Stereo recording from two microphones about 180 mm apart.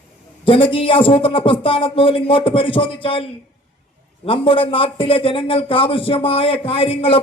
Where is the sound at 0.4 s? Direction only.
30° left (ahead or behind).